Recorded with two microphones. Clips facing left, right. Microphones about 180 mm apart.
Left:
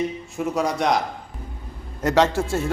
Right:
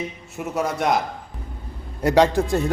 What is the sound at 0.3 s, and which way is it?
Speech, 5° right (ahead or behind).